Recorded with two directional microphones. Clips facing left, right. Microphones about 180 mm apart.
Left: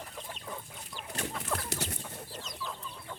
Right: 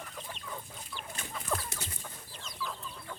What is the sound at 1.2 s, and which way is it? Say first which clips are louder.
Chicken: left 1 dB; 75° left (ahead or behind).